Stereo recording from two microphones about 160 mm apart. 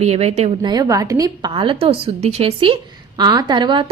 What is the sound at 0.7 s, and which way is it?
Speech, 25° right (ahead or behind).